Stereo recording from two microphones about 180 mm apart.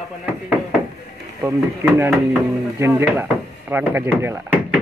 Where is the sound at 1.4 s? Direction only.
15° right (ahead or behind).